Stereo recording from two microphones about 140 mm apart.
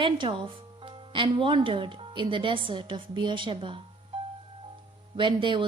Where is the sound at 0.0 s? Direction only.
35° right (ahead or behind).